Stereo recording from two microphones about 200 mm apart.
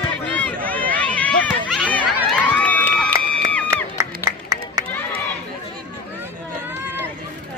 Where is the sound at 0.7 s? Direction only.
10° left (ahead or behind).